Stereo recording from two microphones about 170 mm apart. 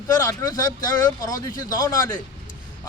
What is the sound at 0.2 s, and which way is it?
A man's voice, 15° left (ahead or behind).